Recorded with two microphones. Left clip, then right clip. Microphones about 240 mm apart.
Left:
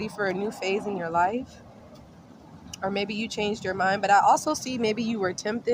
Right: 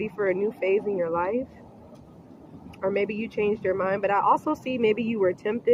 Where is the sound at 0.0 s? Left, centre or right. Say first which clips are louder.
Right 3 dB; left.